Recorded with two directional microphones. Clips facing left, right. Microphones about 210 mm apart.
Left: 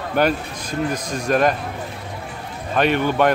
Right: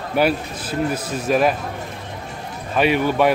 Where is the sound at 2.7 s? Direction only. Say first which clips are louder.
Right 1 dB; 5° right (ahead or behind).